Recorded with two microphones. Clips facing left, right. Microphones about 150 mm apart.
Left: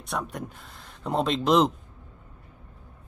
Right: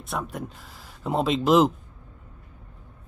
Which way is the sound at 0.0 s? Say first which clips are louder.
Right 1 dB; centre (ahead or behind).